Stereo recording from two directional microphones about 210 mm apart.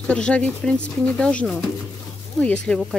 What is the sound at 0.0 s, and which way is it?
Speech, 5° left (ahead or behind).